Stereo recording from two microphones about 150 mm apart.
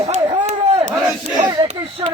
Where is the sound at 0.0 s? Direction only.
45° right (ahead or behind).